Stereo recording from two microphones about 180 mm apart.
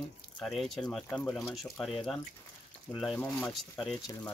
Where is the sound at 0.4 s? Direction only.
Centre (ahead or behind).